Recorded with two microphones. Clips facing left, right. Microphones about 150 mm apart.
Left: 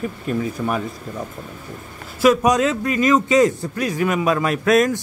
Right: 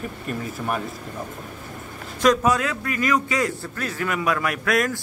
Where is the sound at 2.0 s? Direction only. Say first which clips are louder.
Left 3 dB; 5° left (ahead or behind).